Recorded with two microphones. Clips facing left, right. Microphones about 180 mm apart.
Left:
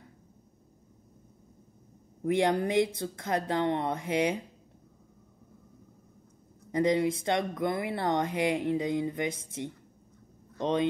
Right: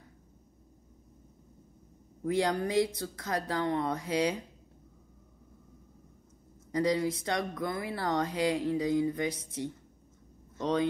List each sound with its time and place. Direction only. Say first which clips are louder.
2.2 s speech: left 3 dB; 25° left (ahead or behind)
6.7 s speech: left 3 dB; 25° left (ahead or behind)
10.6 s speech: left 1 dB; 20° left (ahead or behind)